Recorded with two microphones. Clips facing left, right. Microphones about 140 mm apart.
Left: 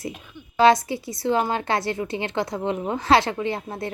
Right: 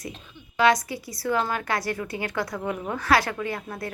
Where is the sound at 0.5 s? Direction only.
30° left (ahead or behind).